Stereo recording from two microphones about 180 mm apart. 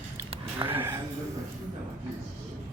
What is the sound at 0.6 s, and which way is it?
Speech, 10° right (ahead or behind).